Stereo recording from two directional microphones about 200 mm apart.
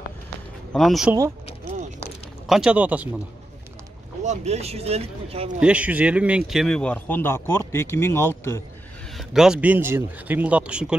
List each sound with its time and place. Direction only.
0.7 s speech: centre (ahead or behind)
2.4 s speech: 5° right (ahead or behind)
4.2 s speech: 35° right (ahead or behind)
5.6 s speech: 5° right (ahead or behind); by 8.6 s 15° left (ahead or behind)
9.1 s speech: centre (ahead or behind)